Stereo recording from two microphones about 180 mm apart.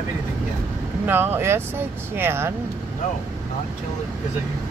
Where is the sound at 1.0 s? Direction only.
10° right (ahead or behind).